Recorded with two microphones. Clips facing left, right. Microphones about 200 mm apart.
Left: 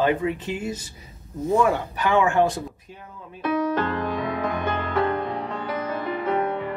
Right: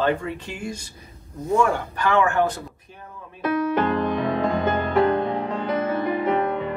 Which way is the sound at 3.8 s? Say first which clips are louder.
Right 4 dB; 20° right (ahead or behind).